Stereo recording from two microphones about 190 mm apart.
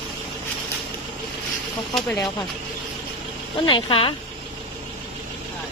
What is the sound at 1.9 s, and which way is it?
Speech, centre (ahead or behind).